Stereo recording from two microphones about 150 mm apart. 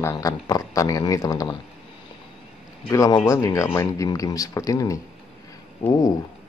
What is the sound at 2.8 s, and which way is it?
Speech, 20° left (ahead or behind).